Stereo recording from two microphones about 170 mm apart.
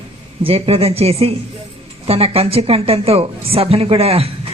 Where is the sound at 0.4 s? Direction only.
35° right (ahead or behind).